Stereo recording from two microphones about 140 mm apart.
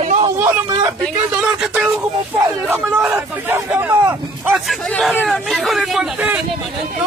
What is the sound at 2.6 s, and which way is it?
Speech, 5° right (ahead or behind).